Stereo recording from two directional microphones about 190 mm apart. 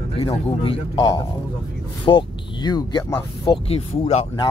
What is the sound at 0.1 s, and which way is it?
Speech, 30° left (ahead or behind).